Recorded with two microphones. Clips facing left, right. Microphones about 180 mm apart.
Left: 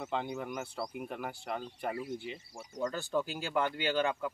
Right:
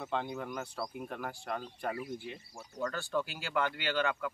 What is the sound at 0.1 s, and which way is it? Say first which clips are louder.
Speech: even; 10° left (ahead or behind).